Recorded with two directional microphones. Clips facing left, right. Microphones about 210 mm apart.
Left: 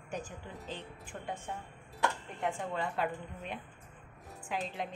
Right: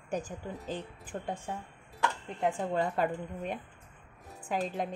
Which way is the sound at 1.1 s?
35° right (ahead or behind).